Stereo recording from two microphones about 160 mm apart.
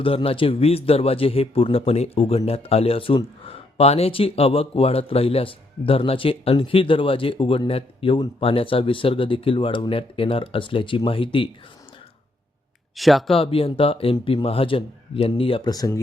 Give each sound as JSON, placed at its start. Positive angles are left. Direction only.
{"t": 0.0, "sound": "speech", "side_deg": 35}
{"t": 13.0, "sound": "speech", "side_deg": 0}
{"t": 13.3, "sound": "speech", "side_deg": 35}
{"t": 15.7, "sound": "speech", "side_deg": 25}